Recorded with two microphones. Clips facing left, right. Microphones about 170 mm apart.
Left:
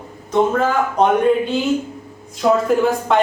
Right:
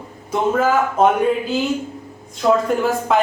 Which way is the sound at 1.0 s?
5° right (ahead or behind).